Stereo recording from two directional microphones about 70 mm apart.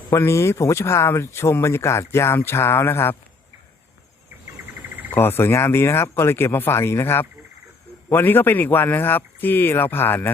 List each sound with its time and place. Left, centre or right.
0.1 s speech: left
5.1 s speech: left